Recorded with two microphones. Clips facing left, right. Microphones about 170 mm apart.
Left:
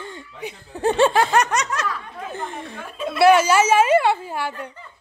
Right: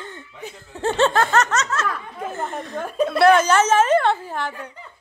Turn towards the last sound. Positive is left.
turn(degrees=10)  # may be behind; listen again after turning